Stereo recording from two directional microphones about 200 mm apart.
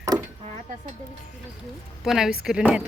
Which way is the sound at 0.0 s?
15° right (ahead or behind).